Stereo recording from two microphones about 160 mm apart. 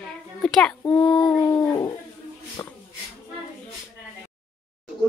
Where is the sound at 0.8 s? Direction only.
25° left (ahead or behind).